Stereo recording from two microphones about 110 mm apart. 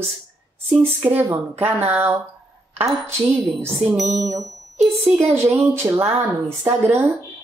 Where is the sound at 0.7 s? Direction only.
20° right (ahead or behind).